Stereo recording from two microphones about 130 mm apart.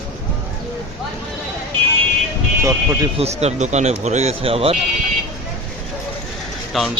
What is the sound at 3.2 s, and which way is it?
Speech, 55° right (ahead or behind).